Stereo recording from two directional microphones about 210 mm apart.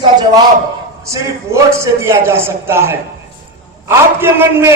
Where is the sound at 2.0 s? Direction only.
10° right (ahead or behind).